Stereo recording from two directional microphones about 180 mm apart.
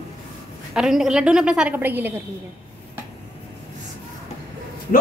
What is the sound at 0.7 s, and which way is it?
A woman's voice, 5° right (ahead or behind).